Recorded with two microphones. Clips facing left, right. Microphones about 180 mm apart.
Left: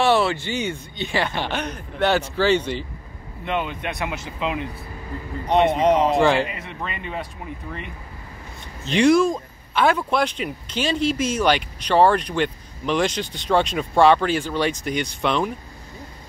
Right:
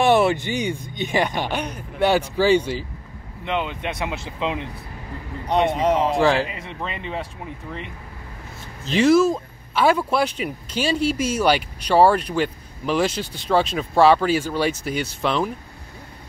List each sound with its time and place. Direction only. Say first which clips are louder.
0.0 s speech: right 2 dB; 20° right (ahead or behind)
5.7 s speech: left 2 dB; 15° left (ahead or behind)
6.0 s speech: left 1 dB; centre (ahead or behind)
8.8 s speech: right 1 dB; centre (ahead or behind)